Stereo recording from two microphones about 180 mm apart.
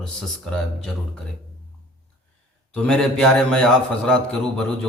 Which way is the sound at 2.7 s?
5° left (ahead or behind).